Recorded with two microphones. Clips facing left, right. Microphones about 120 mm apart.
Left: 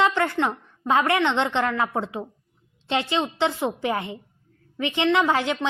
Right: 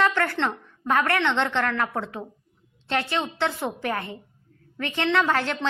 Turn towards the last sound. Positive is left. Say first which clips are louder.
# left 2 dB
turn(degrees=15)  # may be behind; listen again after turning